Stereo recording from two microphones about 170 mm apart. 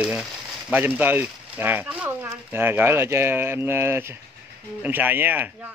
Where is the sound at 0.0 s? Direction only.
5° right (ahead or behind).